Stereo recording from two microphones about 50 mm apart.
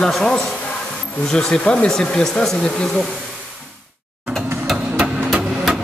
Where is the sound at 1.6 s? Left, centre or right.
Left.